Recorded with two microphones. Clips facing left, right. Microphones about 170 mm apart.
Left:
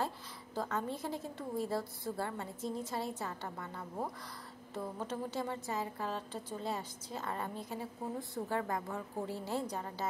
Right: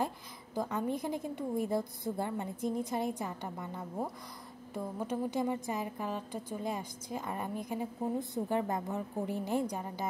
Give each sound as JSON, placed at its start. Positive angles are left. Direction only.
{"t": 0.6, "sound": "a woman's voice", "side_deg": -15}